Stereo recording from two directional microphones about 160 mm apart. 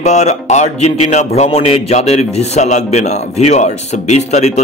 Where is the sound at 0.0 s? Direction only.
45° left (ahead or behind).